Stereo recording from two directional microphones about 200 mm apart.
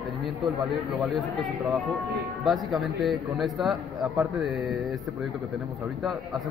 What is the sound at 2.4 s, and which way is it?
A man's voice, centre (ahead or behind).